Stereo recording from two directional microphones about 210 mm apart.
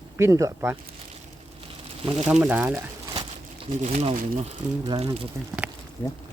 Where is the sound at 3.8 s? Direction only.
30° right (ahead or behind).